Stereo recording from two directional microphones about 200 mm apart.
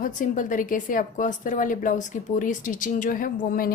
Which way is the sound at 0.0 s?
40° left (ahead or behind).